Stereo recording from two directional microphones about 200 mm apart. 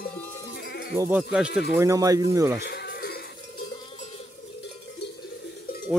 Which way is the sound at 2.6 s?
55° left (ahead or behind).